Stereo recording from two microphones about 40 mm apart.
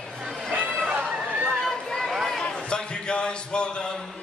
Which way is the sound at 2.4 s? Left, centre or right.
Left.